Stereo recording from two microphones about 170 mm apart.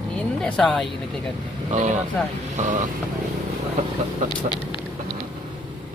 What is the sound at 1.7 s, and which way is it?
Speech, 45° right (ahead or behind).